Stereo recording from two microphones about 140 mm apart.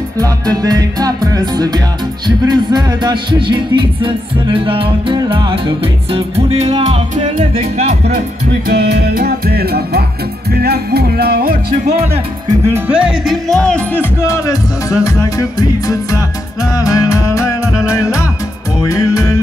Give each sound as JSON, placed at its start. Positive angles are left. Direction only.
{"t": 0.2, "sound": "music", "side_deg": -25}
{"t": 8.6, "sound": "music", "side_deg": -90}
{"t": 11.1, "sound": "music", "side_deg": -90}
{"t": 12.6, "sound": "music", "side_deg": -15}
{"t": 14.2, "sound": "speech", "side_deg": 20}
{"t": 16.7, "sound": "speech", "side_deg": 25}